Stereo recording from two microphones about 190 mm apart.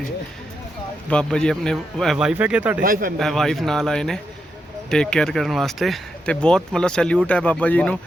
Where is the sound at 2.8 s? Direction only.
50° right (ahead or behind).